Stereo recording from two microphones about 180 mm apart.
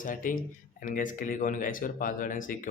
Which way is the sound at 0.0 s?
50° left (ahead or behind).